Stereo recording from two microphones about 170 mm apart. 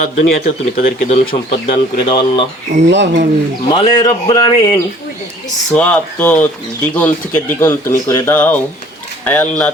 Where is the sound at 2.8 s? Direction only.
90° right.